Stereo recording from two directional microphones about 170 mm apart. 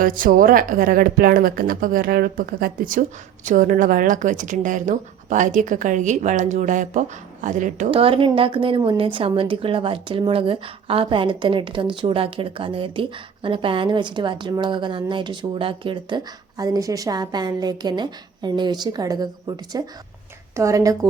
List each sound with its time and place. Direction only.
0.0 s speech: 55° right (ahead or behind)
7.9 s a woman's voice: 30° right (ahead or behind)